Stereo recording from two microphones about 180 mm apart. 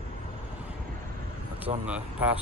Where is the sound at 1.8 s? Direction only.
5° right (ahead or behind).